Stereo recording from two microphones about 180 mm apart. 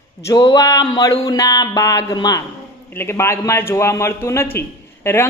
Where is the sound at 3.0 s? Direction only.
15° left (ahead or behind).